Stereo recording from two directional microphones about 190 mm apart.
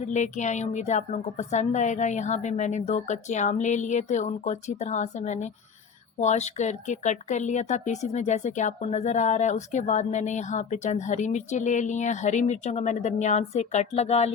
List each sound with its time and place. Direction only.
0.0 s speech: 40° left (ahead or behind)